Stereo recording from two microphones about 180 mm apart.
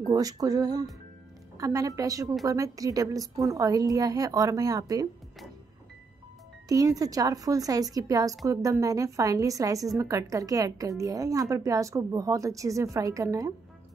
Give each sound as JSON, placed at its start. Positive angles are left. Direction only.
{"t": 0.0, "sound": "a woman's voice", "side_deg": -20}
{"t": 6.7, "sound": "a woman's voice", "side_deg": -20}